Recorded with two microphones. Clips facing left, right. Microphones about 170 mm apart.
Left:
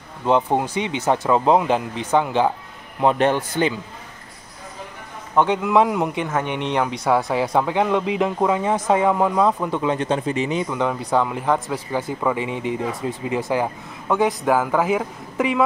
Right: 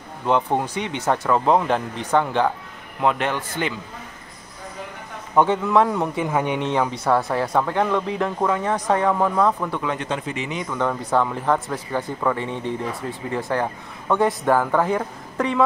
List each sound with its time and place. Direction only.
0.5 s a man's voice: 20° left (ahead or behind)
3.0 s speech: 30° left (ahead or behind)
5.3 s a man's voice: 10° right (ahead or behind)
5.6 s a man's voice: 10° left (ahead or behind)
6.2 s speech: 10° right (ahead or behind)
7.1 s a man's voice: 5° left (ahead or behind)
9.9 s speech: 30° left (ahead or behind)
10.7 s a man's voice: 10° left (ahead or behind)